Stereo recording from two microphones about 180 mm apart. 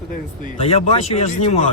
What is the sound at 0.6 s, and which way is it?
Speech, 35° left (ahead or behind).